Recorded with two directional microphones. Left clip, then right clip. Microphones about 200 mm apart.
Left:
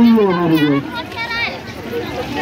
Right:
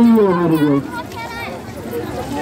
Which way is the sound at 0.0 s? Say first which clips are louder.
Even; 35° left (ahead or behind).